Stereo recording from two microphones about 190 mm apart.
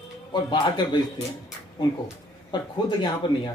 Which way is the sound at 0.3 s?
25° left (ahead or behind).